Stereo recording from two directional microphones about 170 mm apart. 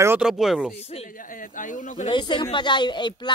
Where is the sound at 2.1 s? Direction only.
30° left (ahead or behind).